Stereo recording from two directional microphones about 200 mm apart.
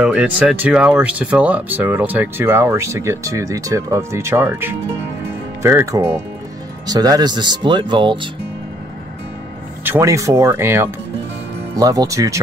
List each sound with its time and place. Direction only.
0.0 s speech: 5° right (ahead or behind); by 8.3 s 25° right (ahead or behind)
9.8 s speech: 15° right (ahead or behind)